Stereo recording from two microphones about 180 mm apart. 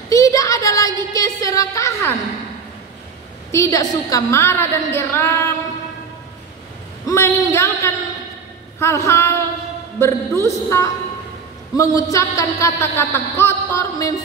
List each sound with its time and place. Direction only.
0.1 s a sound: 20° left (ahead or behind)
3.5 s speech: 20° left (ahead or behind)
7.1 s speech: 15° left (ahead or behind)